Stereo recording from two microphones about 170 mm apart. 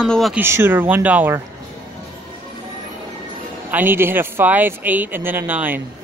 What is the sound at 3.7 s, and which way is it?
Speech, 10° right (ahead or behind).